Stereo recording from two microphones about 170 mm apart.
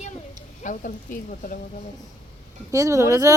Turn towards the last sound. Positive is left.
turn(degrees=-20)  # may be behind; listen again after turning